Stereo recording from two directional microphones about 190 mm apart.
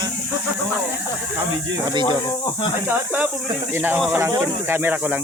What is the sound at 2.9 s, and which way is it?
Speech, 10° right (ahead or behind).